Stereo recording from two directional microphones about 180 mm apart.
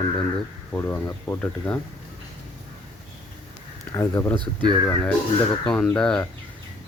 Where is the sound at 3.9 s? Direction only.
15° left (ahead or behind).